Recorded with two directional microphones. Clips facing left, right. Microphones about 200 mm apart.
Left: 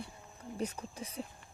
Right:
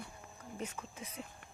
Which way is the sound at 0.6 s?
40° left (ahead or behind).